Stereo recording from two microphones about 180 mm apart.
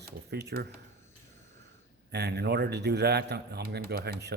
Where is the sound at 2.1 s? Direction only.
65° right (ahead or behind).